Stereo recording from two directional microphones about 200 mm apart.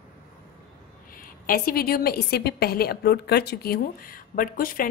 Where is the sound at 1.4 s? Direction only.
45° left (ahead or behind).